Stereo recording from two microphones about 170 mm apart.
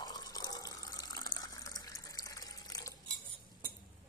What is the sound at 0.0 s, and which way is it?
Water, 20° left (ahead or behind).